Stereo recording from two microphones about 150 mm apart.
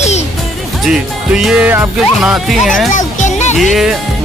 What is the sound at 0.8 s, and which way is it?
Speech, 5° right (ahead or behind).